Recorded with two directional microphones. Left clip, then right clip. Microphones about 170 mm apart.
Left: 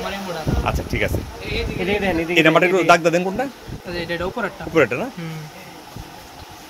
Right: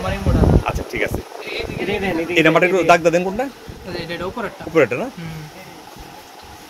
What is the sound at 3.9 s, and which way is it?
Speech, 30° left (ahead or behind).